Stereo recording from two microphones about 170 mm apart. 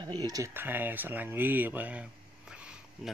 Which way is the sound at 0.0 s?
25° right (ahead or behind).